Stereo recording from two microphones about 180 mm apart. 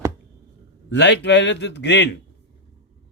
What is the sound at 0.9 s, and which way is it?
A man's voice, 75° left (ahead or behind).